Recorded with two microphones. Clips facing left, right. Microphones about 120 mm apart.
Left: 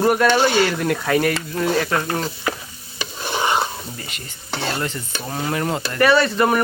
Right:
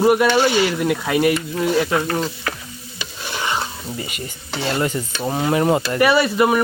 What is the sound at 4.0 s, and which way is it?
Stir, 10° right (ahead or behind).